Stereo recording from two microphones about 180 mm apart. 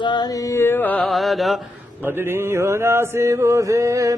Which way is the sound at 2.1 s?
10° right (ahead or behind).